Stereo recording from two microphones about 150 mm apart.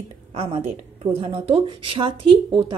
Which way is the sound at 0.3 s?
40° right (ahead or behind).